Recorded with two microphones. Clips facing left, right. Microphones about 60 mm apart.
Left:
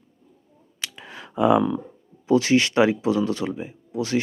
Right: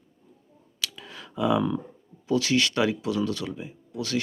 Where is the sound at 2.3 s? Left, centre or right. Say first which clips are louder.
Left 5 dB; left.